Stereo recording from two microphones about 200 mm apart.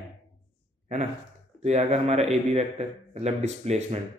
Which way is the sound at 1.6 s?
35° right (ahead or behind).